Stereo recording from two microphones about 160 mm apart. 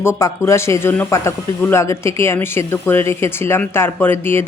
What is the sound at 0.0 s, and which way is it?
Speech, 15° left (ahead or behind).